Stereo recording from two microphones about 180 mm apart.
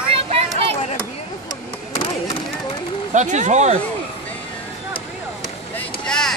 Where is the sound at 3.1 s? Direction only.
40° right (ahead or behind).